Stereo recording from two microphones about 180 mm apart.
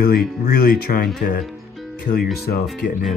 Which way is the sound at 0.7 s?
60° left (ahead or behind).